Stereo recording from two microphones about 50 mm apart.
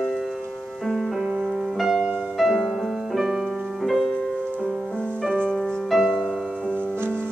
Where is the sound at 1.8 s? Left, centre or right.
Centre.